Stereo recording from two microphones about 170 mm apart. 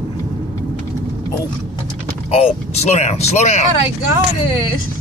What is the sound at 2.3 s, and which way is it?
Speech, 40° left (ahead or behind).